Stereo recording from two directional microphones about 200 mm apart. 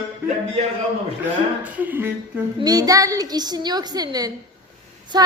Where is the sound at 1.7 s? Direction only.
10° right (ahead or behind).